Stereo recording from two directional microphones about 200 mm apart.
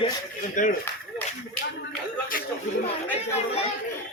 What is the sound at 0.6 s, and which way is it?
Speech, 40° left (ahead or behind).